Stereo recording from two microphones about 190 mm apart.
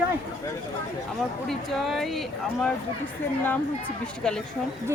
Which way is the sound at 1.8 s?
Centre (ahead or behind).